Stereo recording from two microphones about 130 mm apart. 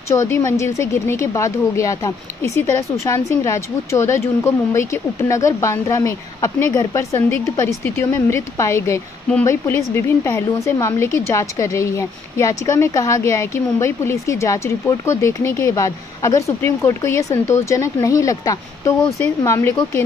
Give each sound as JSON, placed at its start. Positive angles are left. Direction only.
{"t": 0.1, "sound": "speech", "side_deg": 20}